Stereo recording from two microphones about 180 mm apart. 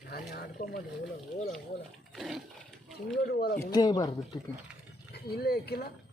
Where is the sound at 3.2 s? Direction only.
55° left (ahead or behind).